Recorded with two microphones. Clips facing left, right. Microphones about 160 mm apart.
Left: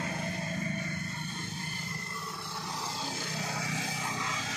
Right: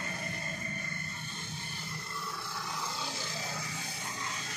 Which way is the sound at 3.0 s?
60° left (ahead or behind).